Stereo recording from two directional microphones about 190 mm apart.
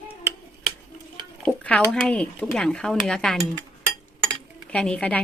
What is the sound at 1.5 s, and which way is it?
Speech, 5° left (ahead or behind).